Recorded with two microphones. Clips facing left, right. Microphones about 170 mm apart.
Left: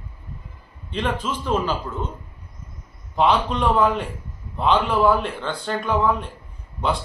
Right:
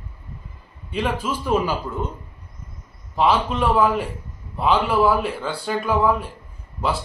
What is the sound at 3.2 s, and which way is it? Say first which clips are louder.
A man's voice: even; 5° right (ahead or behind).